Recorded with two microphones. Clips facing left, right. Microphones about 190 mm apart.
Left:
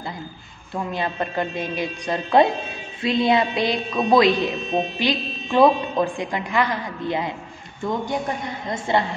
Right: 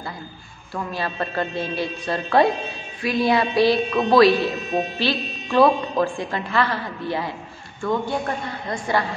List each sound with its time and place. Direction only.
0.7 s a woman's voice: 20° left (ahead or behind)